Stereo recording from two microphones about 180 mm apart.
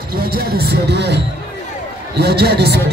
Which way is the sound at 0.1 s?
60° right (ahead or behind).